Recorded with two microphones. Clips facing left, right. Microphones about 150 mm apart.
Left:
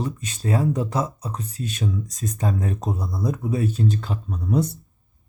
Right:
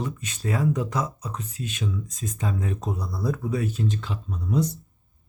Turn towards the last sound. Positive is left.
turn(degrees=55)  # may be behind; listen again after turning